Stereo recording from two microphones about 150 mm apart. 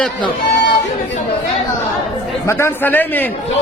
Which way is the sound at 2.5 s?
15° left (ahead or behind).